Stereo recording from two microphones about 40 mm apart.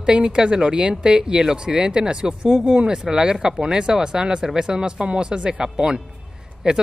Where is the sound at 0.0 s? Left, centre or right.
Right.